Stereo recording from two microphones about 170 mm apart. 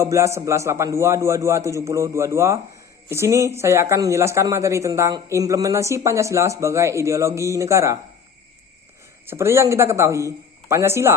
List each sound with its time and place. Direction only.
0.0 s a man's voice: 15° right (ahead or behind)
9.2 s a man's voice: 15° right (ahead or behind)